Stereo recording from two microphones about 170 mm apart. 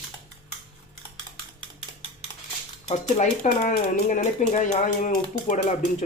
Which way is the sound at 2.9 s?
45° left (ahead or behind).